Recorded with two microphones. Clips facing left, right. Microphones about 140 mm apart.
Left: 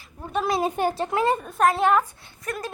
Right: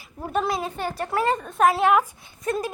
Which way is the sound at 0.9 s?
20° left (ahead or behind).